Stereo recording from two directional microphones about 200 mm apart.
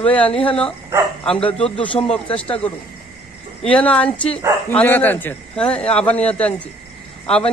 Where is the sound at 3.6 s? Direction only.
5° left (ahead or behind).